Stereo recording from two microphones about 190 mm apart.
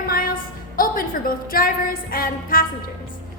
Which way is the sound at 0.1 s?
50° left (ahead or behind).